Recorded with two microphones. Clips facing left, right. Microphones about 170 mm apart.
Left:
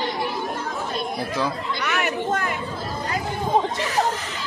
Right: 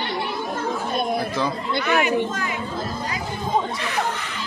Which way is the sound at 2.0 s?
60° left (ahead or behind).